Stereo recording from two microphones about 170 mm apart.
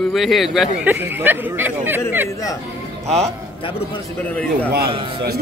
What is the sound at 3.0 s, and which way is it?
Speech, 40° right (ahead or behind).